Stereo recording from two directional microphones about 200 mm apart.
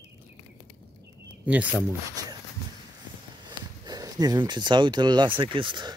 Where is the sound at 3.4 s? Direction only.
20° right (ahead or behind).